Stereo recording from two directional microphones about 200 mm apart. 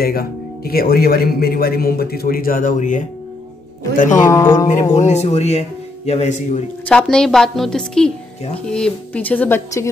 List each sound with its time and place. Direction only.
0.0 s speech: 50° left (ahead or behind)
4.1 s speech: 15° left (ahead or behind)
4.9 s speech: 35° left (ahead or behind)
6.9 s a woman's voice: 5° left (ahead or behind)